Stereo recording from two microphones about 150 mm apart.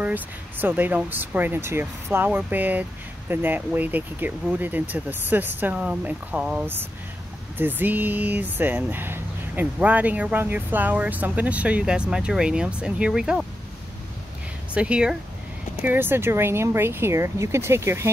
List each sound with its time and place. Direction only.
0.0 s speech: 10° right (ahead or behind)
14.7 s speech: 5° right (ahead or behind)